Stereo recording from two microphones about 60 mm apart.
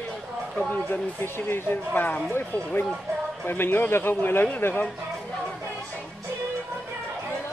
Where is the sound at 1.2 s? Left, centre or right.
Left.